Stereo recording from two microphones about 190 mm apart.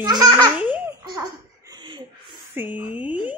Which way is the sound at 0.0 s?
20° right (ahead or behind).